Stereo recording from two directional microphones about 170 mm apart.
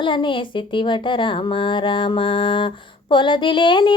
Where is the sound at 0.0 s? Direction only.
30° left (ahead or behind).